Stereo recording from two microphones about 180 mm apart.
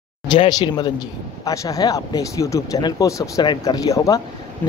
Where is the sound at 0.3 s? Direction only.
25° left (ahead or behind).